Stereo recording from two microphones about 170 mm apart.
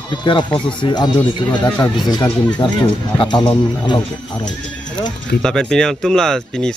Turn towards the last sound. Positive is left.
turn(degrees=5)  # may be behind; listen again after turning